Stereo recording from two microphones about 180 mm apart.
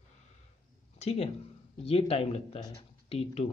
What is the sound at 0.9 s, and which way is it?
Speech, 35° left (ahead or behind).